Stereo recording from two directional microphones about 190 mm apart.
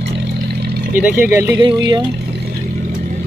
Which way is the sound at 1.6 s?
25° right (ahead or behind).